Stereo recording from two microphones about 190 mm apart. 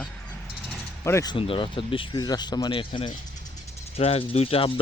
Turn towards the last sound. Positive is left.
turn(degrees=30)  # may be behind; listen again after turning